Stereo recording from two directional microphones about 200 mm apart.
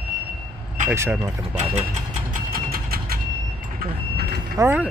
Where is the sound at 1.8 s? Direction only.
35° right (ahead or behind).